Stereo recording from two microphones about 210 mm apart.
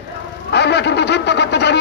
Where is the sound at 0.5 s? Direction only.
55° left (ahead or behind).